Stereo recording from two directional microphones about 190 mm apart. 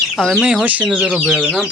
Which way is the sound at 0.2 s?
5° right (ahead or behind).